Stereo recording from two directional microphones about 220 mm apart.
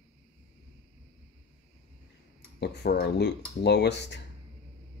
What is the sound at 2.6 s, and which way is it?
Speech, 50° left (ahead or behind).